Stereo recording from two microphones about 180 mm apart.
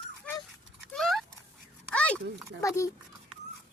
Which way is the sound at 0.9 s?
Centre (ahead or behind).